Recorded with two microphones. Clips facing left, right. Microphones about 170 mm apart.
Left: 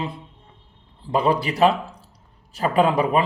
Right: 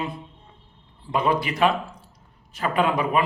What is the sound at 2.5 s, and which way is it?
Mantra, 35° left (ahead or behind).